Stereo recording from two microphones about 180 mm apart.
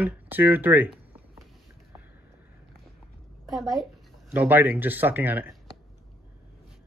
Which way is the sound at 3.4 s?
Centre (ahead or behind).